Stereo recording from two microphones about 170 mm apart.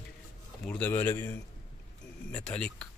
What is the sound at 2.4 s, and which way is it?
Speech, 5° left (ahead or behind).